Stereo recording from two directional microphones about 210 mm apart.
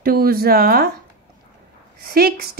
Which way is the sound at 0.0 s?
45° right (ahead or behind).